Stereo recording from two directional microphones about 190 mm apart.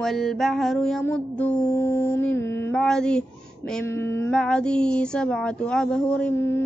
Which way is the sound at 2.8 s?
5° left (ahead or behind).